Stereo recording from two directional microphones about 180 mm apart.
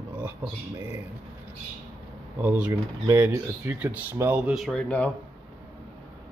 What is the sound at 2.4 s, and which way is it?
Speech, 10° right (ahead or behind).